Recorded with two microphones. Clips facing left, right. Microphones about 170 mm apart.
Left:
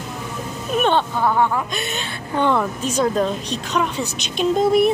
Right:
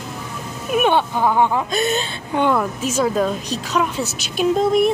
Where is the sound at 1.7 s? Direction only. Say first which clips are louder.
Right 7 dB; 40° right (ahead or behind).